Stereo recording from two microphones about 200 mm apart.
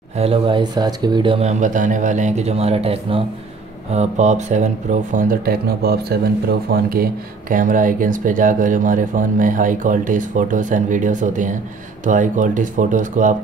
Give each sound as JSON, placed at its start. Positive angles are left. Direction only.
{"t": 0.2, "sound": "speech", "side_deg": -25}
{"t": 5.1, "sound": "speech", "side_deg": -45}